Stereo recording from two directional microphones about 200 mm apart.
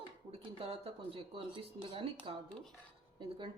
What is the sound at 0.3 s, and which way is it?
Speech, 30° right (ahead or behind).